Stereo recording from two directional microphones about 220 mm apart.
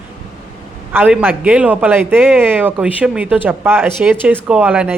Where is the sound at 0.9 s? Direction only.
10° right (ahead or behind).